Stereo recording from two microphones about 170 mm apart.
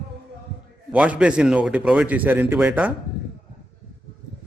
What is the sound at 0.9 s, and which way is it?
A man's voice, 5° right (ahead or behind).